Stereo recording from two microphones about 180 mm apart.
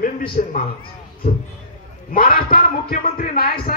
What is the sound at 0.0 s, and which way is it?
Speech, 50° left (ahead or behind).